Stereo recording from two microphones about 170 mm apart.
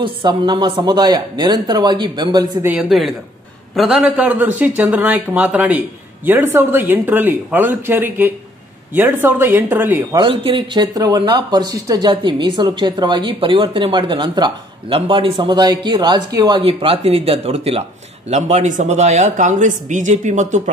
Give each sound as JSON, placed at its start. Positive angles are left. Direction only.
{"t": 0.0, "sound": "speech", "side_deg": -25}
{"t": 2.6, "sound": "speech", "side_deg": -5}
{"t": 10.1, "sound": "speech", "side_deg": -30}